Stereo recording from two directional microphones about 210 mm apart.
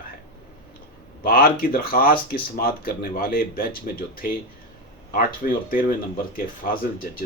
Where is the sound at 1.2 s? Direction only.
45° left (ahead or behind).